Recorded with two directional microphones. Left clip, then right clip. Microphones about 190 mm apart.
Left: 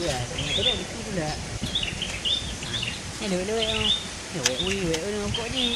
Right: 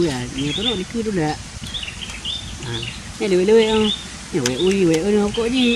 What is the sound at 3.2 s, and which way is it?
Speech, 20° right (ahead or behind).